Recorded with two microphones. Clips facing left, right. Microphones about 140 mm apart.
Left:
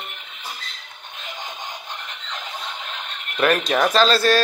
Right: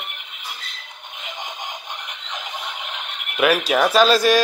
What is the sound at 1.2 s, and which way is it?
Music, 20° right (ahead or behind).